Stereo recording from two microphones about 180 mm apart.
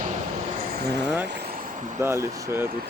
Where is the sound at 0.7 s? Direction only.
65° right (ahead or behind).